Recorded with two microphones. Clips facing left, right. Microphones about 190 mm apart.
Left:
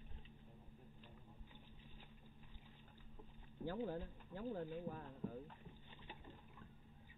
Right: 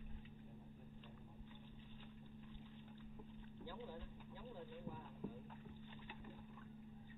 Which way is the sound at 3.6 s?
50° left (ahead or behind).